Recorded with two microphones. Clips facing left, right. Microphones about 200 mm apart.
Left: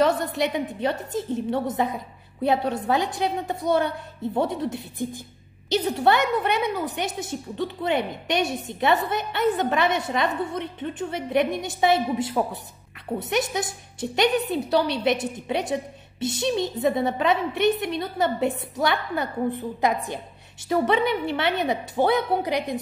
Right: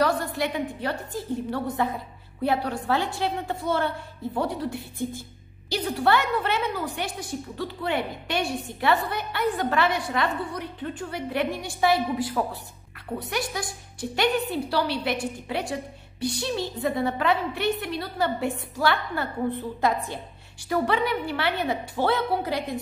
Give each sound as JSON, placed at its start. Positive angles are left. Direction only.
{"t": 0.0, "sound": "a woman's voice", "side_deg": 20}